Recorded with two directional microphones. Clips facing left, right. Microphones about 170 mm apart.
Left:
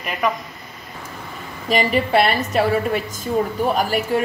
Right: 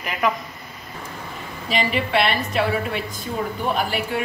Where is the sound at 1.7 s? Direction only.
45° left (ahead or behind).